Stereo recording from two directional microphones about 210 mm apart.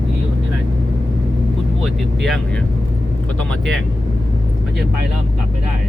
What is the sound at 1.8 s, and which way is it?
Speech, centre (ahead or behind).